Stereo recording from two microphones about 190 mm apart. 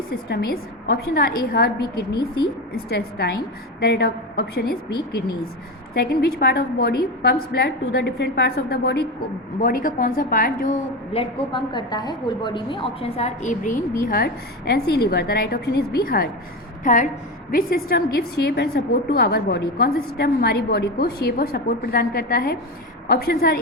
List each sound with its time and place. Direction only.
0.1 s a woman's voice: 55° left (ahead or behind)
2.1 s a woman's voice: 25° left (ahead or behind)
2.7 s a woman's voice: 60° left (ahead or behind)
5.9 s a woman's voice: 55° left (ahead or behind)
9.6 s a woman's voice: 50° left (ahead or behind)
11.1 s a woman's voice: 25° left (ahead or behind); by 16.3 s 50° left (ahead or behind)
16.8 s a woman's voice: 40° left (ahead or behind)